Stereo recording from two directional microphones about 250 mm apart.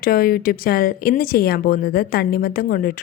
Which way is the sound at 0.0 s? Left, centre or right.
Left.